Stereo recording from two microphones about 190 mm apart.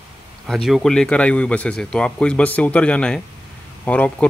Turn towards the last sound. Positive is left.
turn(degrees=5)  # may be behind; listen again after turning